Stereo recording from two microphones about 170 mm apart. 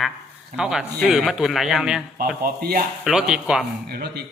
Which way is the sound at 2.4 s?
60° right (ahead or behind).